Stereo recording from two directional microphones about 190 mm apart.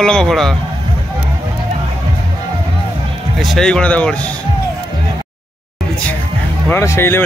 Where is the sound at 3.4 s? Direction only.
Centre (ahead or behind).